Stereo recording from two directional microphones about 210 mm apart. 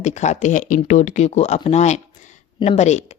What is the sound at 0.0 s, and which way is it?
A woman's voice, 35° left (ahead or behind).